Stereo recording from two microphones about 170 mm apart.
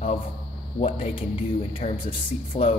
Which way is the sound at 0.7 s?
35° left (ahead or behind).